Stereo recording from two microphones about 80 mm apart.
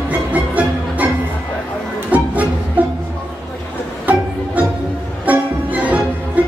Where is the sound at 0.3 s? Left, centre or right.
Centre.